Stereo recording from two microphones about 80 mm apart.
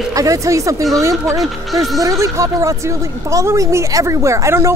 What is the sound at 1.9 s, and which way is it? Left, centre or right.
A woman's voice, right.